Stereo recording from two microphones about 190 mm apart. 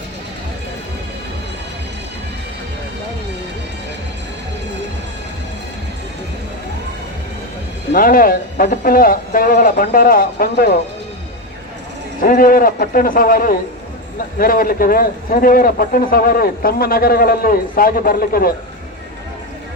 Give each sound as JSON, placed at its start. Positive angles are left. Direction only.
{"t": 7.9, "sound": "speech", "side_deg": 45}
{"t": 12.2, "sound": "speech", "side_deg": 50}